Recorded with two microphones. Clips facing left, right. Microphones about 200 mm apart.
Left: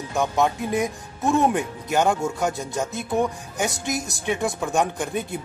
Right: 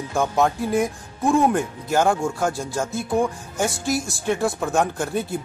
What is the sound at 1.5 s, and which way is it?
Speech, 15° left (ahead or behind).